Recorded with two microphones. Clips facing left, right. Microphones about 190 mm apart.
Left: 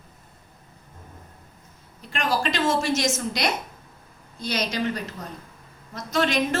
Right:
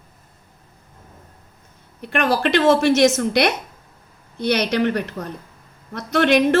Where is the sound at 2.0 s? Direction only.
65° right (ahead or behind).